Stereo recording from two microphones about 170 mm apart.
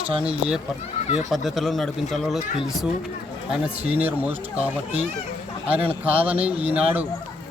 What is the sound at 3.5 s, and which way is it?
A man's voice, 10° right (ahead or behind).